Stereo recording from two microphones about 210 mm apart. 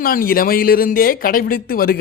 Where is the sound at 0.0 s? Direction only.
45° left (ahead or behind).